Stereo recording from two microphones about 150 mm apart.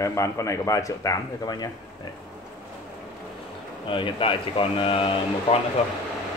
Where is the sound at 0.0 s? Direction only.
20° left (ahead or behind).